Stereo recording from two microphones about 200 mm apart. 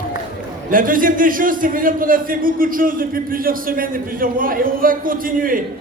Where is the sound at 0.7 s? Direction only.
45° right (ahead or behind).